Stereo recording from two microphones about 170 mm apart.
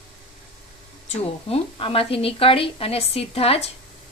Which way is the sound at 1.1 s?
35° left (ahead or behind).